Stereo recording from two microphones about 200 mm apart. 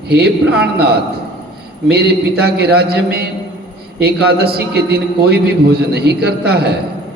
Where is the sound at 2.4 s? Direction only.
55° right (ahead or behind).